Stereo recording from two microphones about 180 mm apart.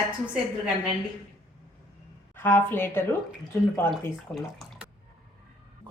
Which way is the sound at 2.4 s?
10° left (ahead or behind).